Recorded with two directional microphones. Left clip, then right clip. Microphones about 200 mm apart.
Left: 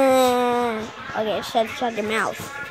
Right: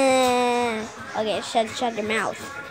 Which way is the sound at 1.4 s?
15° left (ahead or behind).